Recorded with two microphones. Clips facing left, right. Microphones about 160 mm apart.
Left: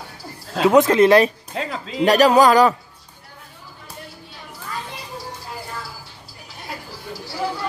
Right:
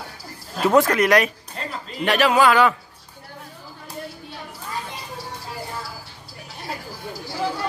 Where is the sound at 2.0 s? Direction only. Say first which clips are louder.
Left 4 dB; 40° left (ahead or behind).